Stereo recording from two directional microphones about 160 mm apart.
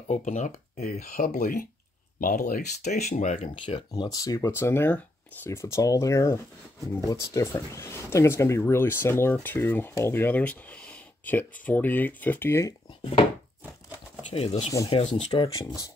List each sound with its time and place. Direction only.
0.1 s speech: 50° left (ahead or behind)
3.6 s speech: 30° left (ahead or behind)
14.3 s speech: 40° left (ahead or behind)